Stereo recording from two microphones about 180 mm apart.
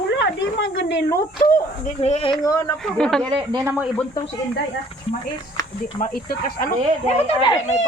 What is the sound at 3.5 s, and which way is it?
Speech, 15° right (ahead or behind).